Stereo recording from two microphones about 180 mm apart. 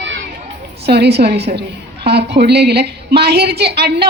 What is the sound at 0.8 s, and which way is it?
A woman's voice, 65° right (ahead or behind).